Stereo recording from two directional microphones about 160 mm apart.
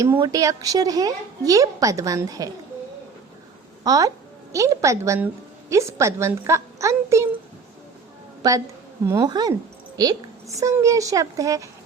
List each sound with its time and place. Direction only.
0.0 s a woman's voice: 20° right (ahead or behind)
3.8 s a woman's voice: 25° right (ahead or behind)
8.4 s a woman's voice: 20° right (ahead or behind)
10.6 s a woman's voice: 20° right (ahead or behind)